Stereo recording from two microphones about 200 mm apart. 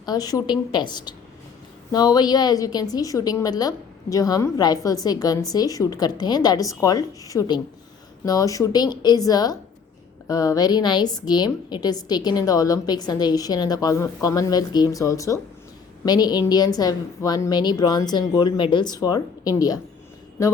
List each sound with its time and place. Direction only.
0.0 s a woman's voice: 20° left (ahead or behind)